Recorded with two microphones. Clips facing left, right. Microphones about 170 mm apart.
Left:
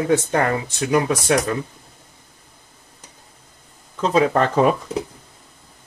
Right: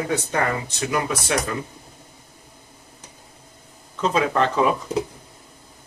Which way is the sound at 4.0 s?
40° left (ahead or behind).